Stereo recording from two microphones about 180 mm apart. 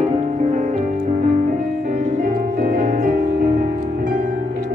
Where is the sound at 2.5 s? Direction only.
45° right (ahead or behind).